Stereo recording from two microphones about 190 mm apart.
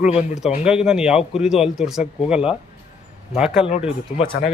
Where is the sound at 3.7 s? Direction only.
30° left (ahead or behind).